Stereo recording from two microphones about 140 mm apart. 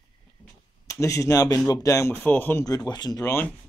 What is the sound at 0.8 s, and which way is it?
Speech, 20° left (ahead or behind).